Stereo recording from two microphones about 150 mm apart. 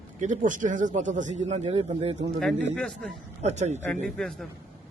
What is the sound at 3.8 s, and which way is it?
Speech, 10° left (ahead or behind).